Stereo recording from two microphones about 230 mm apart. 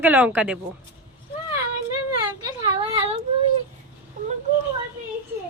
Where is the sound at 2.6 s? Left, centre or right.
Right.